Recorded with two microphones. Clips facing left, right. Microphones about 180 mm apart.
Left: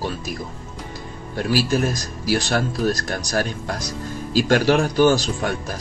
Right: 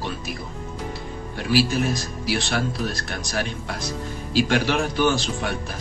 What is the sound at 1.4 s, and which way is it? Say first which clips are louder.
Speech: left 1 dB; 45° left (ahead or behind).